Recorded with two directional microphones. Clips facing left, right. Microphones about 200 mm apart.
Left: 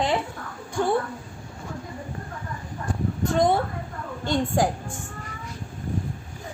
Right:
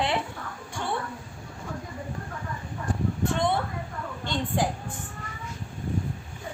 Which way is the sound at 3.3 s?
40° left (ahead or behind).